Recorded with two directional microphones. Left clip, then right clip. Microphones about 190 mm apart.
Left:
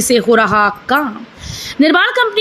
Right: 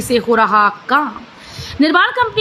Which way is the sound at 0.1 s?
15° left (ahead or behind).